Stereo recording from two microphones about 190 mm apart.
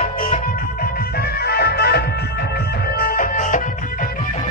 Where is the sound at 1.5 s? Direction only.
55° left (ahead or behind).